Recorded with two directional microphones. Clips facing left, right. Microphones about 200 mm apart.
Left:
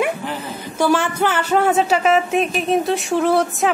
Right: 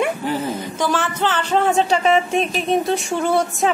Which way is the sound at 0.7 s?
10° left (ahead or behind).